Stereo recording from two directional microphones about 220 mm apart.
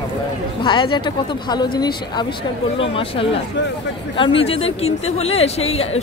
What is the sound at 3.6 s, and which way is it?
Speech, 55° left (ahead or behind).